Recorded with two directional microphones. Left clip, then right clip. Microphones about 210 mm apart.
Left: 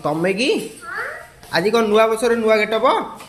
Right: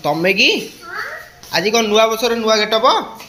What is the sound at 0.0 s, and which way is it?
A man's voice, 5° left (ahead or behind).